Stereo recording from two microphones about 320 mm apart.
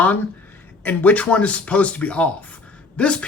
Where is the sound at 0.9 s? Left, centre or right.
Centre.